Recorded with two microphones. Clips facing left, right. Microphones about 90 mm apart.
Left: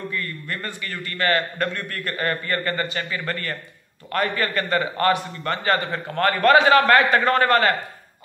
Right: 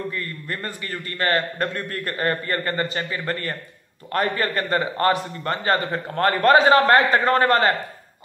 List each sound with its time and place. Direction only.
0.1 s a man's voice: 35° right (ahead or behind)